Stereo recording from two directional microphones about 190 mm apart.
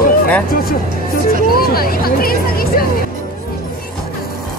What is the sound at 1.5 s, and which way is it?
Music, 50° left (ahead or behind).